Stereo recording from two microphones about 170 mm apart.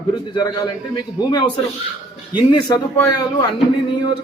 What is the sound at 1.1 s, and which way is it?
Speech, 20° left (ahead or behind).